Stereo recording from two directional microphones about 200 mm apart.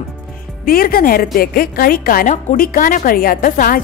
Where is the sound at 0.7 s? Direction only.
45° left (ahead or behind).